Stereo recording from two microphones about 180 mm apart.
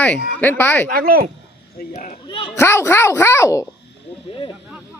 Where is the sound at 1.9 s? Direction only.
45° left (ahead or behind).